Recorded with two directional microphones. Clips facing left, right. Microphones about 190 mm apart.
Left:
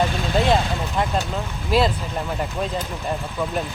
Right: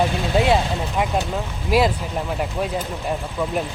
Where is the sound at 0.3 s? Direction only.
10° right (ahead or behind).